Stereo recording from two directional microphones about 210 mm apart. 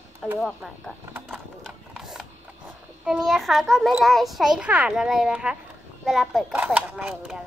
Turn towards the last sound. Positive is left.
turn(degrees=-5)  # may be behind; listen again after turning